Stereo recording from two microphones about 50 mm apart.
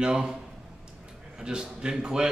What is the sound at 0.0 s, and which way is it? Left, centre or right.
Speech, centre.